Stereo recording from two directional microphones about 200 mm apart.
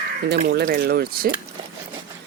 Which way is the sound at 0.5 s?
50° right (ahead or behind).